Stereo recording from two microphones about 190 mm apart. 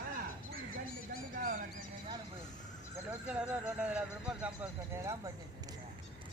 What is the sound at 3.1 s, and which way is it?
Speech, 5° right (ahead or behind).